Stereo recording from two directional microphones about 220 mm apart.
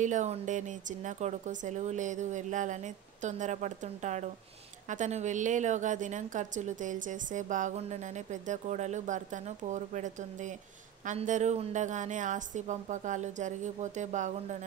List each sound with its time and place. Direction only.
0.0 s a woman's voice: 35° right (ahead or behind)